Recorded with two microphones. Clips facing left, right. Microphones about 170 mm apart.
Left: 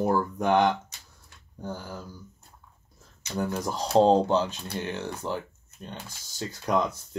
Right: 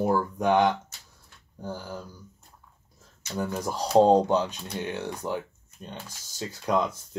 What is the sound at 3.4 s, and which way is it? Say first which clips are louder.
Speech: even; 10° right (ahead or behind).